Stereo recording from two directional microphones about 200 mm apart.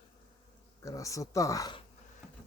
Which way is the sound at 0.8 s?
15° left (ahead or behind).